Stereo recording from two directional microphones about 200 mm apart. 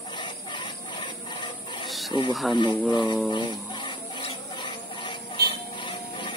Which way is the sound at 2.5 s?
25° left (ahead or behind).